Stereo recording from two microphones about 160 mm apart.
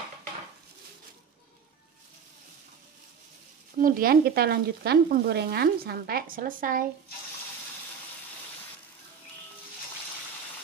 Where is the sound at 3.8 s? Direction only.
65° right (ahead or behind).